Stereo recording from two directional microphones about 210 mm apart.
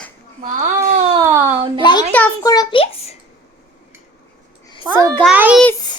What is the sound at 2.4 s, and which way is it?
Speech, 15° left (ahead or behind).